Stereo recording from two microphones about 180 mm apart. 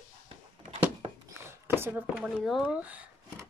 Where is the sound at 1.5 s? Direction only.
10° right (ahead or behind).